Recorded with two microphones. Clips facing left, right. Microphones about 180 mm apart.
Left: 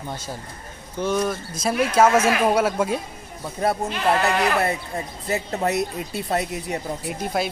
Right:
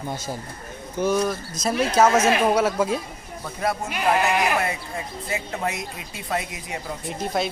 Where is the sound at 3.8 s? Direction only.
15° right (ahead or behind).